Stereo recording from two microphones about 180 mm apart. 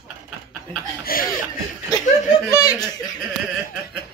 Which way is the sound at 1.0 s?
50° left (ahead or behind).